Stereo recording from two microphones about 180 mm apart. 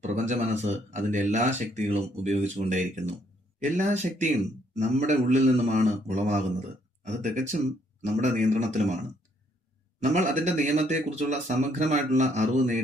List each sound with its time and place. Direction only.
0.0 s speech: 40° right (ahead or behind)
10.0 s speech: 40° right (ahead or behind)